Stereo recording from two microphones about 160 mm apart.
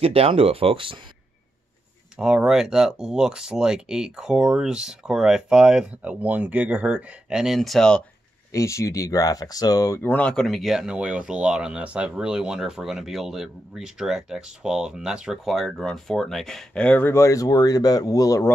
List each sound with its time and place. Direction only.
0.0 s speech: 40° right (ahead or behind)
2.1 s speech: 5° right (ahead or behind)
8.5 s speech: 20° left (ahead or behind)